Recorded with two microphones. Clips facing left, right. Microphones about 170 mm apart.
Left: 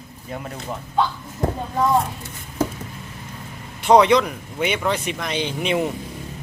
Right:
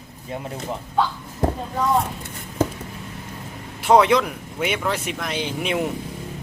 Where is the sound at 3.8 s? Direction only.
5° right (ahead or behind).